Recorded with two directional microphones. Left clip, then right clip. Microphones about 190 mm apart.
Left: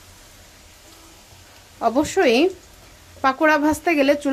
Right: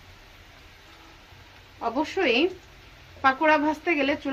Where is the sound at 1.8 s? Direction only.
60° left (ahead or behind).